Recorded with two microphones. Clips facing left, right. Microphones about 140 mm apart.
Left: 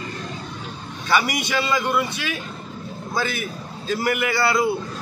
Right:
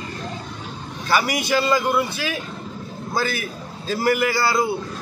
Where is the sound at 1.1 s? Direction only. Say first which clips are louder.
Right 1 dB; 35° right (ahead or behind).